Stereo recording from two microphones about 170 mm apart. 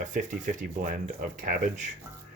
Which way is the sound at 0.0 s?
45° right (ahead or behind).